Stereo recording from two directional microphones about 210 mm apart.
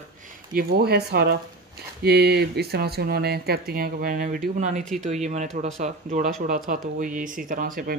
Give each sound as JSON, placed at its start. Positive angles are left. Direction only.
{"t": 0.6, "sound": "speech", "side_deg": -45}